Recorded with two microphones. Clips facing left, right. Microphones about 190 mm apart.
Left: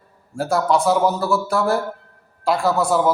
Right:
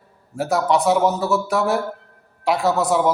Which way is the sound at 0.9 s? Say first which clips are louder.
Even; centre (ahead or behind).